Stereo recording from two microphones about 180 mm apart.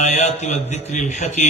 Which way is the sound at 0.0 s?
40° left (ahead or behind).